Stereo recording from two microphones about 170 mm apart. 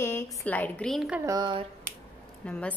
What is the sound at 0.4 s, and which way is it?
Speech, 10° left (ahead or behind).